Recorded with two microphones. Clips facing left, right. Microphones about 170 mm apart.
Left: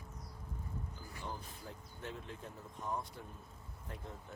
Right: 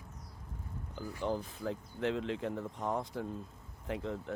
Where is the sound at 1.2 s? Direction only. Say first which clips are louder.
Right 12 dB; 90° right.